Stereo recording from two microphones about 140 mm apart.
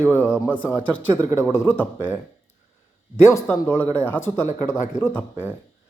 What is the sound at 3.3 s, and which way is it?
Speech, 20° left (ahead or behind).